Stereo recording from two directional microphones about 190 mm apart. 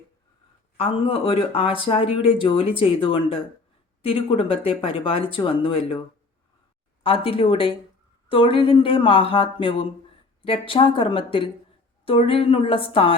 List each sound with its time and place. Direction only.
0.8 s speech: 30° left (ahead or behind)
7.0 s speech: 30° left (ahead or behind)